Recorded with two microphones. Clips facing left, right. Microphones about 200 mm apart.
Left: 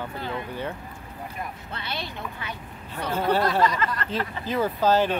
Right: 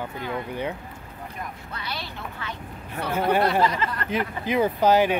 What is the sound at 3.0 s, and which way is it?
Speech, 10° right (ahead or behind).